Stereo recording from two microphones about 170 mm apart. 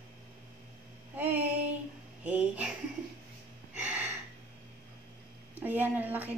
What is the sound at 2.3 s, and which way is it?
Speech, 10° right (ahead or behind).